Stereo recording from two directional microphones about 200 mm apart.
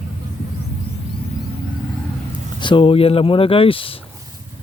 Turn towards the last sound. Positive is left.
turn(degrees=25)  # may be behind; listen again after turning